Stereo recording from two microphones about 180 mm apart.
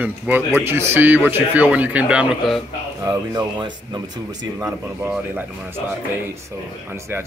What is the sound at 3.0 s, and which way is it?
A man's voice, 20° right (ahead or behind).